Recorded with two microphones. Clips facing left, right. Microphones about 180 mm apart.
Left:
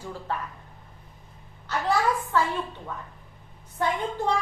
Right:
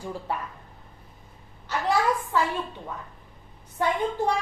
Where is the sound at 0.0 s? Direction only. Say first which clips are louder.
Right 1 dB; 10° right (ahead or behind).